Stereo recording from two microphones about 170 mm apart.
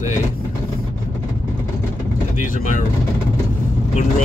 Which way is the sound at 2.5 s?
50° left (ahead or behind).